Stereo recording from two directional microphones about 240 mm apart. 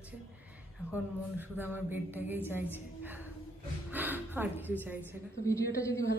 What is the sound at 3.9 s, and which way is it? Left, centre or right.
A woman's voice, centre.